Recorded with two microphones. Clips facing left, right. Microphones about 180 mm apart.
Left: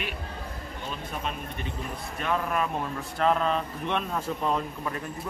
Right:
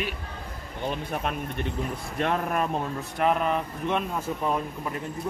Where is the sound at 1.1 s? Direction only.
60° right (ahead or behind).